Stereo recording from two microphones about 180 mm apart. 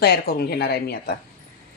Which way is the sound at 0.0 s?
60° left (ahead or behind).